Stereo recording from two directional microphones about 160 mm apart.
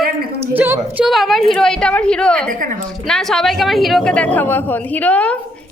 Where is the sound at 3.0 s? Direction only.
5° left (ahead or behind).